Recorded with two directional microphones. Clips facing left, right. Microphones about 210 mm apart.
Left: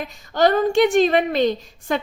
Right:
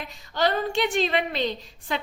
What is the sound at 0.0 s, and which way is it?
A woman's voice, 45° left (ahead or behind).